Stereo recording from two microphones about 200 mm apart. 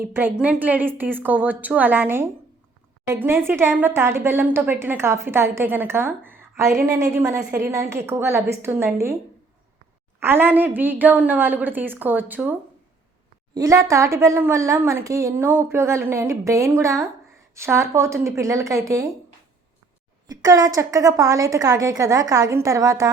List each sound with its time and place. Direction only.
0.0 s a woman's voice: 10° right (ahead or behind)
10.2 s a woman's voice: 10° right (ahead or behind)
20.2 s a woman's voice: 20° right (ahead or behind)